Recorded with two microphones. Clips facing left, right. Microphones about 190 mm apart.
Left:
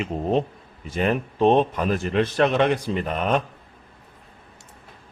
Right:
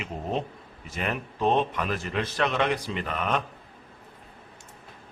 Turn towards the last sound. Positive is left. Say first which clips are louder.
# left 5 dB
turn(degrees=30)  # may be behind; listen again after turning